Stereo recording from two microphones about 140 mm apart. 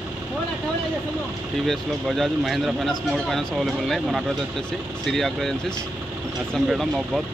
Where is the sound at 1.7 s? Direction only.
Centre (ahead or behind).